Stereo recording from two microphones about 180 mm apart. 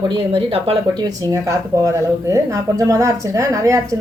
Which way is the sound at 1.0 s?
20° right (ahead or behind).